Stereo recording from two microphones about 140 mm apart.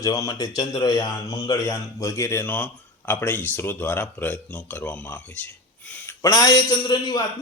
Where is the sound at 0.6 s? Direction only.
30° left (ahead or behind); by 6.1 s 15° left (ahead or behind).